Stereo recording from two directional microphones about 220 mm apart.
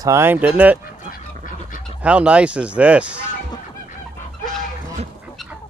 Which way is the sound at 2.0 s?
5° right (ahead or behind).